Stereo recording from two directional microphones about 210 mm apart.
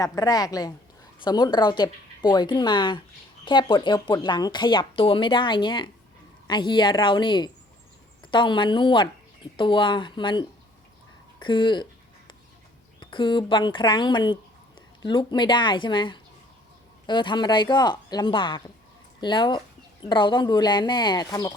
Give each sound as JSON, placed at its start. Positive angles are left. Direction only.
{"t": 0.0, "sound": "a woman's voice", "side_deg": 15}
{"t": 13.0, "sound": "speech", "side_deg": 20}